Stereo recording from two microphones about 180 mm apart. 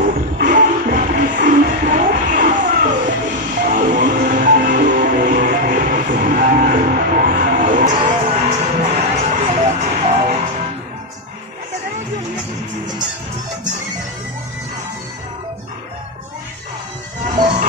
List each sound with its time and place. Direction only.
0.0 s music: 50° right (ahead or behind)
8.0 s music: 35° right (ahead or behind)